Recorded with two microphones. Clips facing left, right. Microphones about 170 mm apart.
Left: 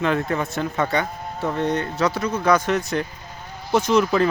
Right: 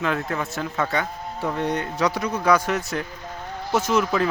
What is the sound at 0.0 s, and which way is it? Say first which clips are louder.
A man's voice: left 3 dB; centre (ahead or behind).